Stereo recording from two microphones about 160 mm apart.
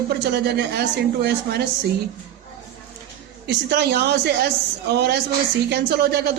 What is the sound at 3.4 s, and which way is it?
A woman's voice, 90° right.